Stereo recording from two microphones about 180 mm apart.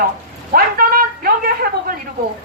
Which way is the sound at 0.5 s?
55° right (ahead or behind).